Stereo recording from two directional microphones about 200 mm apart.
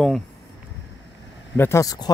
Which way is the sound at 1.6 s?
15° left (ahead or behind).